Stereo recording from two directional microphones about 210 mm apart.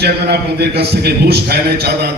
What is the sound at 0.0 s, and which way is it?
A man's voice, 50° right (ahead or behind).